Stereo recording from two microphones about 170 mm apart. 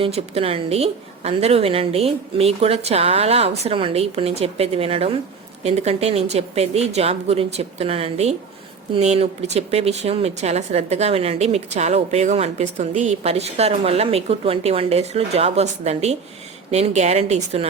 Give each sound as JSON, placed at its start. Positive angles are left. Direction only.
{"t": 0.0, "sound": "speech", "side_deg": -35}